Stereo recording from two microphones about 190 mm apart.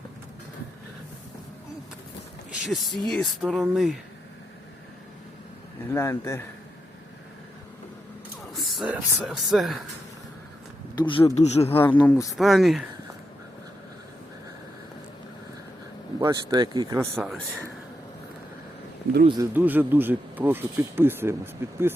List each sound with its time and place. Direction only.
2.5 s speech: centre (ahead or behind)
5.9 s a man's voice: 15° left (ahead or behind)
8.7 s speech: 5° right (ahead or behind)
10.9 s speech: 25° left (ahead or behind)
12.0 s a man's voice: 15° left (ahead or behind)
12.4 s speech: centre (ahead or behind)
16.2 s speech: 20° right (ahead or behind)
19.4 s speech: 10° right (ahead or behind)